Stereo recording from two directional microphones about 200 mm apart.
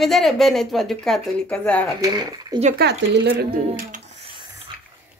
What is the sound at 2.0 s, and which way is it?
Speech, 20° right (ahead or behind).